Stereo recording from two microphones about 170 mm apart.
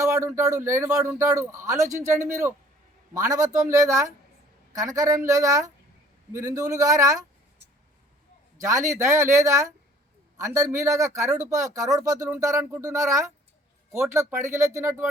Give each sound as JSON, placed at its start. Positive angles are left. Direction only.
{"t": 0.0, "sound": "speech", "side_deg": -15}
{"t": 8.5, "sound": "a man's voice", "side_deg": -20}